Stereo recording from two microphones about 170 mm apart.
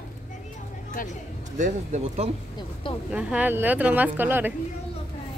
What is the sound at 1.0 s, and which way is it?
Speech, 55° left (ahead or behind).